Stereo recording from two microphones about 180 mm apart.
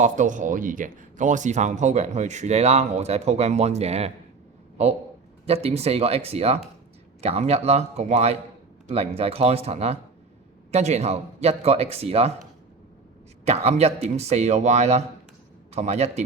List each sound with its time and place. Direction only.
0.0 s speech: 45° right (ahead or behind)
5.5 s speech: 35° right (ahead or behind)
13.4 s speech: 35° right (ahead or behind)